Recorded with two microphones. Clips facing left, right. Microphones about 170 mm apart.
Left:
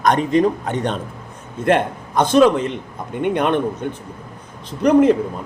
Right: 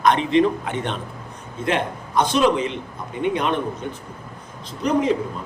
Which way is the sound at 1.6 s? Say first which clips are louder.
Left 6 dB; 50° left (ahead or behind).